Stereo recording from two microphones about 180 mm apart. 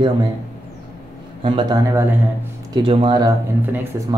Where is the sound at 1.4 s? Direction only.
25° right (ahead or behind).